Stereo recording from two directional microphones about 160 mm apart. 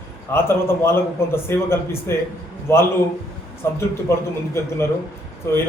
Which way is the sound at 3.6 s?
15° left (ahead or behind).